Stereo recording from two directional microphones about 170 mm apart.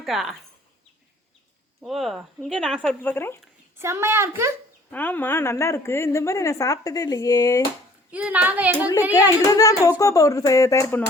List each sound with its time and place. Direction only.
0.0 s speech: centre (ahead or behind)
1.8 s speech: centre (ahead or behind)
3.8 s speech: 15° right (ahead or behind)
4.9 s a woman's voice: 10° left (ahead or behind)
8.1 s speech: 10° right (ahead or behind)
9.5 s speech: 20° left (ahead or behind)